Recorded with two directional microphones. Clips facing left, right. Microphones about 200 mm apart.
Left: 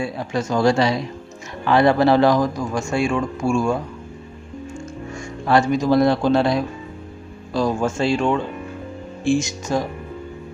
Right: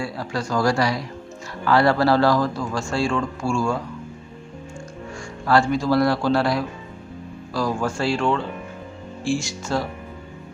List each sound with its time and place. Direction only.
0.0 s speech: 20° left (ahead or behind)
5.5 s speech: 20° left (ahead or behind)